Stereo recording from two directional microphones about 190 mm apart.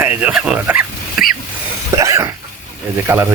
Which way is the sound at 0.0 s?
10° right (ahead or behind).